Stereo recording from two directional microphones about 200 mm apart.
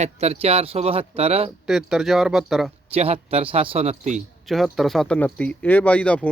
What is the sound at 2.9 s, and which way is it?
Speech, 30° right (ahead or behind).